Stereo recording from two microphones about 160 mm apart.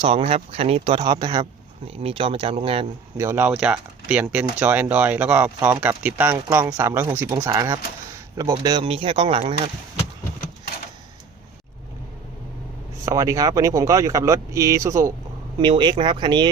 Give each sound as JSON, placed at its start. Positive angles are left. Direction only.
{"t": 0.0, "sound": "speech", "side_deg": -35}
{"t": 1.9, "sound": "speech", "side_deg": -35}
{"t": 3.2, "sound": "speech", "side_deg": -15}
{"t": 13.1, "sound": "speech", "side_deg": -20}